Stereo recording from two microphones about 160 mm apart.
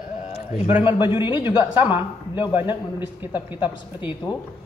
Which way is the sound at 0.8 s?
30° left (ahead or behind).